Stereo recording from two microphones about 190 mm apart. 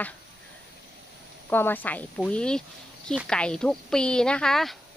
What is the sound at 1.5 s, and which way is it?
Speech, 10° left (ahead or behind).